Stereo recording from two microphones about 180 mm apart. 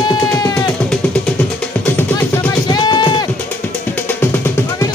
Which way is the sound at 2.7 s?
25° left (ahead or behind).